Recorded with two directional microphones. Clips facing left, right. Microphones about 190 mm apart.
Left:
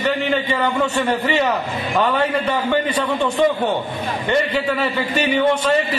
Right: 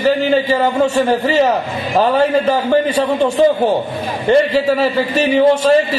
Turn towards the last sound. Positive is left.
turn(degrees=-30)  # may be behind; listen again after turning